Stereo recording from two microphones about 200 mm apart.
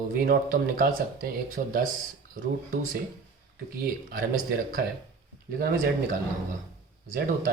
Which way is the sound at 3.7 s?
50° right (ahead or behind).